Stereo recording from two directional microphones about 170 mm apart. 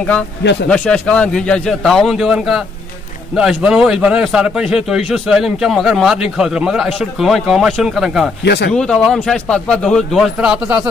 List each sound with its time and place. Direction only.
0.4 s speech: 90° left
0.7 s a man's voice: 5° left (ahead or behind)
8.5 s speech: 80° left
8.7 s a man's voice: 5° left (ahead or behind)